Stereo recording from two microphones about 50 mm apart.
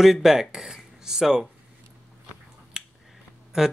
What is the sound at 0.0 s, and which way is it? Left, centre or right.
Speech, centre.